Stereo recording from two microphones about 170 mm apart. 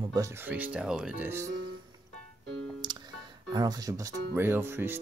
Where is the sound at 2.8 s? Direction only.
25° right (ahead or behind).